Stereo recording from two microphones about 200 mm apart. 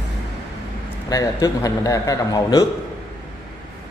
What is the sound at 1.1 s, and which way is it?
A man's voice, 20° left (ahead or behind).